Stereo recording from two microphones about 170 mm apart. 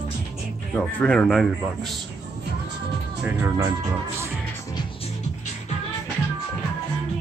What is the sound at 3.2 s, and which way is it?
Speech, 15° right (ahead or behind).